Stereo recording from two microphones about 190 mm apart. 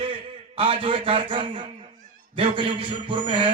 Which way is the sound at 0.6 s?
25° right (ahead or behind).